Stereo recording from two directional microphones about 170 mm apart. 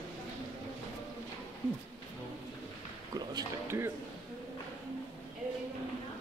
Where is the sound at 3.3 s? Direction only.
20° right (ahead or behind).